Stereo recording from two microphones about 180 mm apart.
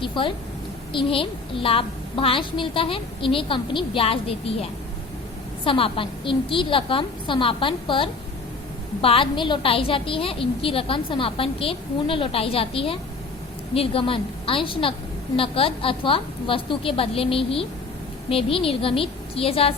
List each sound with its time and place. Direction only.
0.0 s a woman's voice: 30° left (ahead or behind)